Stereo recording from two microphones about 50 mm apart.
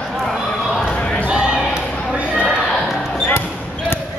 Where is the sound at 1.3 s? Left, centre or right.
Centre.